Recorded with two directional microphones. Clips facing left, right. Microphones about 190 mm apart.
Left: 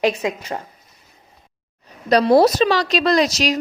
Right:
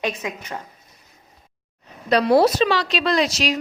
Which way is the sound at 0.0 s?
30° left (ahead or behind).